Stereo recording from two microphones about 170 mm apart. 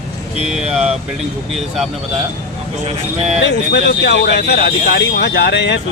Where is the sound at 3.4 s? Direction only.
90° left.